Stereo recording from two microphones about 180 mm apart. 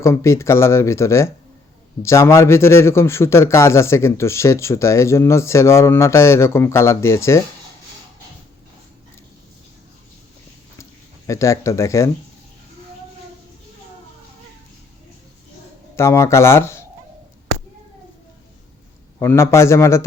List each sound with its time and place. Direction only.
0.0 s a man's voice: 15° left (ahead or behind)
11.3 s a man's voice: 15° left (ahead or behind)
16.0 s a man's voice: 15° left (ahead or behind)
19.2 s a man's voice: 15° left (ahead or behind)